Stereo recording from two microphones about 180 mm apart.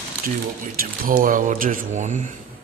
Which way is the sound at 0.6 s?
50° right (ahead or behind).